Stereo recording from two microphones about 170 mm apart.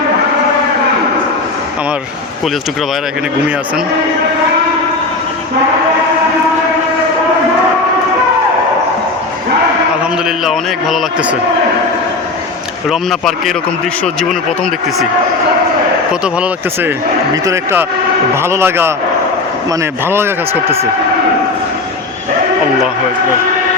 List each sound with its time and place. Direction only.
10.0 s a man's voice: centre (ahead or behind)
12.9 s a man's voice: centre (ahead or behind)
16.2 s speech: 5° right (ahead or behind)
17.3 s speech: 20° right (ahead or behind)